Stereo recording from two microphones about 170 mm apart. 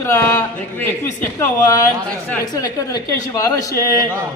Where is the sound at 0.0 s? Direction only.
15° left (ahead or behind).